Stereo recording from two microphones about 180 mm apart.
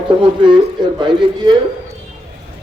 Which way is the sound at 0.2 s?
25° right (ahead or behind).